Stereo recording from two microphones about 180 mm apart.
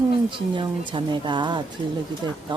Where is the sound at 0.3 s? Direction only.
25° right (ahead or behind).